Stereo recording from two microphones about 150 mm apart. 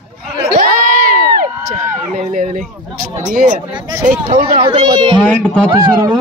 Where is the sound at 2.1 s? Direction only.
55° right (ahead or behind).